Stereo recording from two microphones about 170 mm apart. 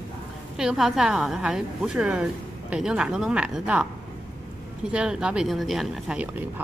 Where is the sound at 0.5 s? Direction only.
5° right (ahead or behind).